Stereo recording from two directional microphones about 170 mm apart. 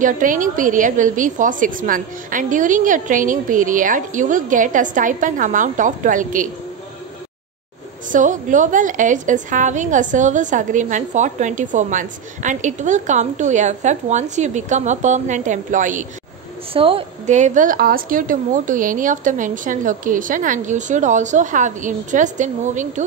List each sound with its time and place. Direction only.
0.0 s a woman's voice: 50° right (ahead or behind)
8.1 s a woman's voice: 50° right (ahead or behind)
16.7 s a woman's voice: 35° right (ahead or behind)
17.4 s a woman's voice: 50° right (ahead or behind)